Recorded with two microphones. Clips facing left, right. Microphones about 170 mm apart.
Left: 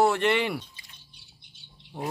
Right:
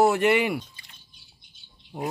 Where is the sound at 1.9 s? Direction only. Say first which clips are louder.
Right 3 dB; 15° right (ahead or behind).